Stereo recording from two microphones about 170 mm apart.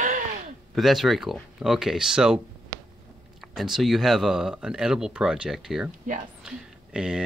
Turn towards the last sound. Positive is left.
turn(degrees=-5)  # may be behind; listen again after turning